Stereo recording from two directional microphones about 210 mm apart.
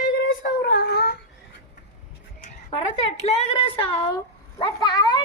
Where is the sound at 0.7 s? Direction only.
50° left (ahead or behind).